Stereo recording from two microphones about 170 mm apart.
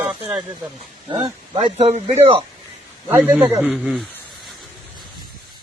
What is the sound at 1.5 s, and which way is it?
Speech, 40° right (ahead or behind).